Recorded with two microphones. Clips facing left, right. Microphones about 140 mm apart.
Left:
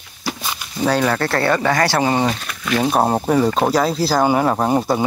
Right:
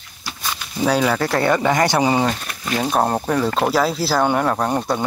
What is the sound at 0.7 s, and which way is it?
Speech, 5° right (ahead or behind).